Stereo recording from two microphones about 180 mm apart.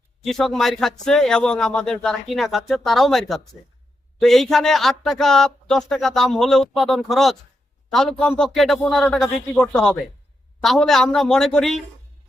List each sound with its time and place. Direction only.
0.3 s speech: centre (ahead or behind)